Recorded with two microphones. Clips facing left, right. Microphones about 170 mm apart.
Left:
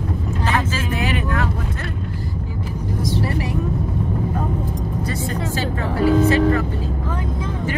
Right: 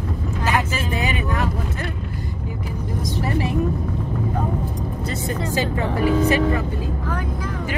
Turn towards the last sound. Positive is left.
turn(degrees=-15)  # may be behind; listen again after turning